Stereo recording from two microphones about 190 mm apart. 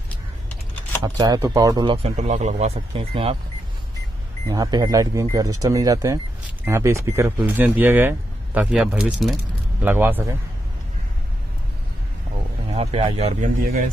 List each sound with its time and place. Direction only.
1.0 s speech: 20° right (ahead or behind)
2.1 s speech: 40° right (ahead or behind)
4.5 s speech: 20° right (ahead or behind)
12.7 s speech: 30° right (ahead or behind)